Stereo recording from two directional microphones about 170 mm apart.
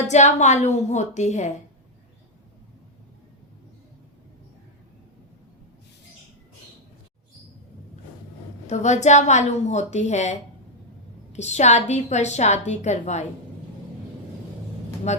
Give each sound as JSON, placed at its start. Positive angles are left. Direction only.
{"t": 0.1, "sound": "a woman's voice", "side_deg": 40}
{"t": 8.6, "sound": "a woman's voice", "side_deg": 45}
{"t": 15.1, "sound": "speech", "side_deg": 40}